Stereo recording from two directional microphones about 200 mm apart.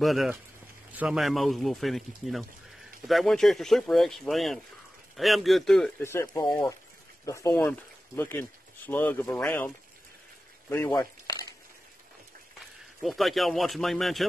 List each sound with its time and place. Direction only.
0.0 s speech: centre (ahead or behind)
10.7 s a sound: 15° left (ahead or behind)
13.0 s speech: centre (ahead or behind)